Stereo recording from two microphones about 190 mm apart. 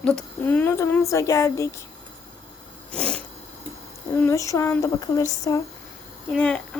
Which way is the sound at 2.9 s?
5° left (ahead or behind).